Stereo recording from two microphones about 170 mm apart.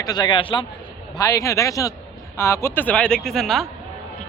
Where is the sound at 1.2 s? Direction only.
20° left (ahead or behind).